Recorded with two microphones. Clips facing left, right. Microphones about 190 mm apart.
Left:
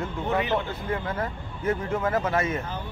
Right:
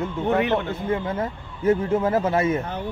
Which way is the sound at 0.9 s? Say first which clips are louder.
Right 5 dB; 25° right (ahead or behind).